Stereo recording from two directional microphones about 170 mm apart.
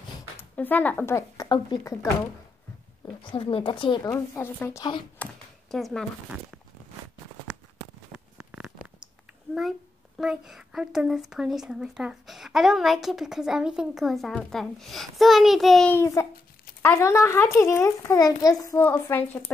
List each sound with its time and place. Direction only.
0.4 s speech: 10° left (ahead or behind)
3.3 s speech: 30° left (ahead or behind)
4.1 s a child's voice: 15° left (ahead or behind)
5.2 s a sound: centre (ahead or behind)
8.1 s speech: 5° right (ahead or behind)
15.9 s a child's voice: 15° left (ahead or behind)